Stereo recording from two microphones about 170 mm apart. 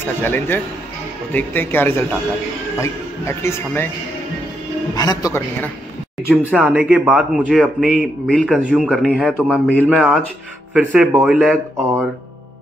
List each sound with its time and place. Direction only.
0.0 s speech: 10° left (ahead or behind)
4.9 s a man's voice: 20° left (ahead or behind)
6.3 s speech: 5° right (ahead or behind)